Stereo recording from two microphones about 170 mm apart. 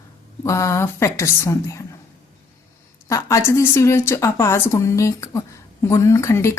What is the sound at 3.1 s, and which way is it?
A woman's voice, 20° left (ahead or behind).